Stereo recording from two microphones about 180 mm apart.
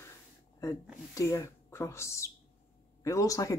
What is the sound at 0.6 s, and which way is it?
Speech, 20° left (ahead or behind).